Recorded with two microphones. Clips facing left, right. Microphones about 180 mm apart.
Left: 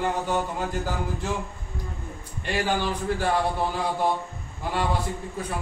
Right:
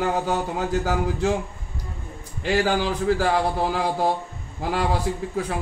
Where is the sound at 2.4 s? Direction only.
90° right.